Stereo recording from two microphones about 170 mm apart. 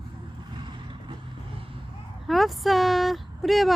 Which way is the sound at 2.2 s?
Centre (ahead or behind).